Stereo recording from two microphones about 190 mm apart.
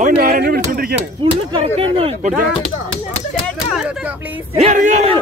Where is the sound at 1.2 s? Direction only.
25° right (ahead or behind).